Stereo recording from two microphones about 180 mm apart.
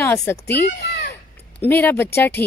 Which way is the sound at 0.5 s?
60° left (ahead or behind).